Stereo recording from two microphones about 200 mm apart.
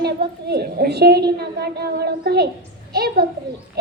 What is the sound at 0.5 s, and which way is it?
A woman's voice, 55° right (ahead or behind).